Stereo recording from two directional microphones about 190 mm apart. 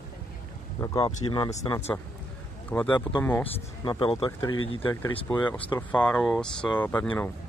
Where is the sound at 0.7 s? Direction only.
20° left (ahead or behind).